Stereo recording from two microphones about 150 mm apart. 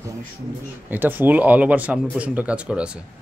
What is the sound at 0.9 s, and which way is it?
Speech, 15° right (ahead or behind).